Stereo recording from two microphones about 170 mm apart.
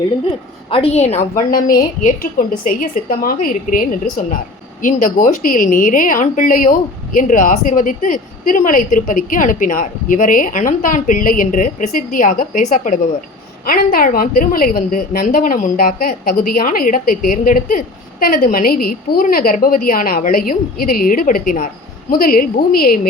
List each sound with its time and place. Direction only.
0.7 s a woman's voice: 35° left (ahead or behind)
1.5 s a woman's voice: 55° left (ahead or behind)